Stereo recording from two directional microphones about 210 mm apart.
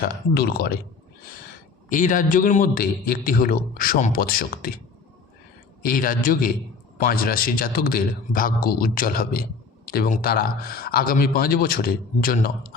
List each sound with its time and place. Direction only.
0.0 s speech: 45° left (ahead or behind)
1.9 s speech: 40° left (ahead or behind)
5.8 s speech: 45° left (ahead or behind)